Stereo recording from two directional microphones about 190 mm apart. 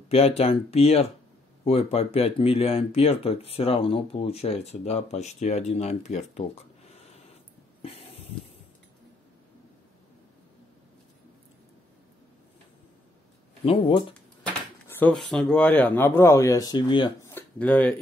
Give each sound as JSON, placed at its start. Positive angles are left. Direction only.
{"t": 0.1, "sound": "speech", "side_deg": 30}
{"t": 7.8, "sound": "snort", "side_deg": 30}
{"t": 13.7, "sound": "speech", "side_deg": 25}
{"t": 14.9, "sound": "speech", "side_deg": 10}
{"t": 17.3, "sound": "a sound", "side_deg": 10}